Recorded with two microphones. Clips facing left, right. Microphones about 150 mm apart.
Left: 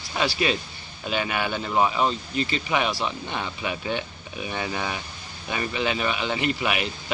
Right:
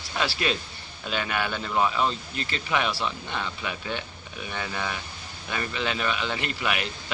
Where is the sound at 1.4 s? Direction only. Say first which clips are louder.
Left 3 dB; 25° left (ahead or behind).